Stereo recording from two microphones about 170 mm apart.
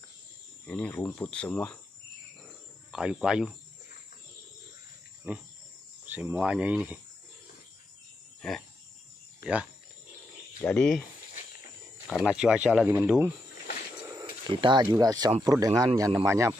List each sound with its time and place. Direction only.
0.7 s speech: 10° left (ahead or behind)
2.9 s speech: 5° right (ahead or behind)
5.3 s speech: 10° right (ahead or behind)
8.4 s speech: centre (ahead or behind)
10.6 s speech: 5° left (ahead or behind)
12.1 s speech: centre (ahead or behind)
14.5 s a man's voice: 30° right (ahead or behind)